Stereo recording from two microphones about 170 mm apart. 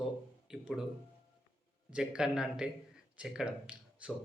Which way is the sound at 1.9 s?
5° right (ahead or behind).